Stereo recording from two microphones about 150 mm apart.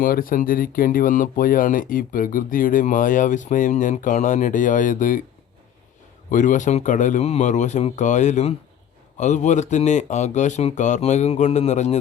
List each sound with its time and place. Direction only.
0.0 s speech: 70° left (ahead or behind)
6.3 s speech: 60° left (ahead or behind)